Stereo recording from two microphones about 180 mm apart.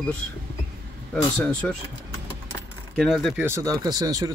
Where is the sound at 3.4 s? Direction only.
15° right (ahead or behind).